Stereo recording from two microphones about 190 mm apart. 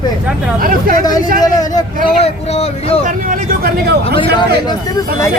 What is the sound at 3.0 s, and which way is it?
Speech, 45° right (ahead or behind).